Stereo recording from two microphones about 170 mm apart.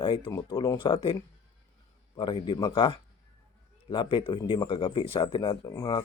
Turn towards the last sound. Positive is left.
turn(degrees=20)  # may be behind; listen again after turning